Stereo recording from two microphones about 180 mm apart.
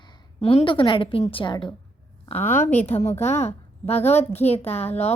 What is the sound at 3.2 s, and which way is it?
A woman's voice, 35° left (ahead or behind).